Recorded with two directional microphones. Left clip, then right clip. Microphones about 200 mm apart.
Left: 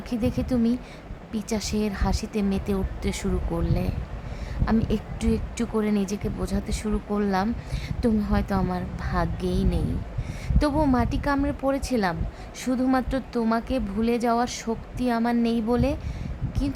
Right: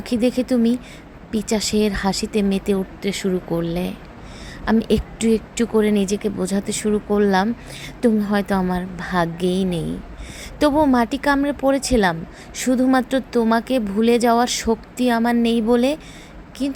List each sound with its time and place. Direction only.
0.0 s speech: 15° right (ahead or behind)